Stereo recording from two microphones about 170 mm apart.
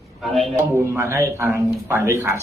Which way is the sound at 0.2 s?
Centre (ahead or behind).